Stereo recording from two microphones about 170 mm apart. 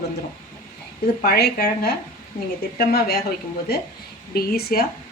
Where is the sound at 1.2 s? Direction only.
65° left (ahead or behind).